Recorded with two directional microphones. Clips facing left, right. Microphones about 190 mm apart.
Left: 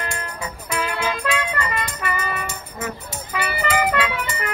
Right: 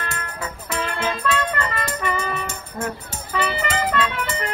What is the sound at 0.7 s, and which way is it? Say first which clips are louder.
Music: left 1 dB; 10° left (ahead or behind).